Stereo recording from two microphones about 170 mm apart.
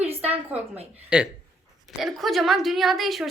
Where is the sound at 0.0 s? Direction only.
35° right (ahead or behind).